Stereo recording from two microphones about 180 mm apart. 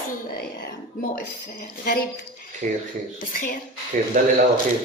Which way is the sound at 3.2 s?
50° left (ahead or behind).